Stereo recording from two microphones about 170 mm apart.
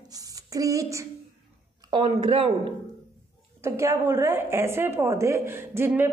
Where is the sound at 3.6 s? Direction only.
15° right (ahead or behind).